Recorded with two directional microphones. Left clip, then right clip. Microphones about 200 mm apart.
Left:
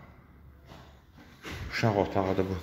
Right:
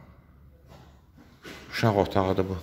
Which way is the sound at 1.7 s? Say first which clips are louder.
Right 3 dB; 15° right (ahead or behind).